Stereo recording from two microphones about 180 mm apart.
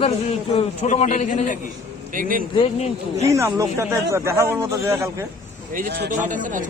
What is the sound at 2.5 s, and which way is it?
Speech, 30° left (ahead or behind).